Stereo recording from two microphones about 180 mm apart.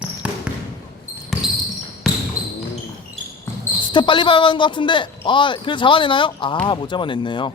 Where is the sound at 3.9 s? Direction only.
25° left (ahead or behind).